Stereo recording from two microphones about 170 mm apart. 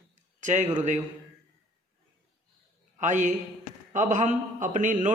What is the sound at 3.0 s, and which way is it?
A man's voice, 45° right (ahead or behind).